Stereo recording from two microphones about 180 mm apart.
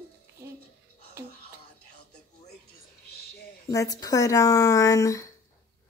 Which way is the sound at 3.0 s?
60° left (ahead or behind).